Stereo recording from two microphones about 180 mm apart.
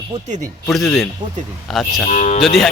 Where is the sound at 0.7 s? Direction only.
Centre (ahead or behind).